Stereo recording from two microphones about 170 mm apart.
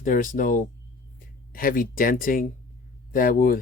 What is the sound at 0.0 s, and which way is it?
Speech, 50° left (ahead or behind).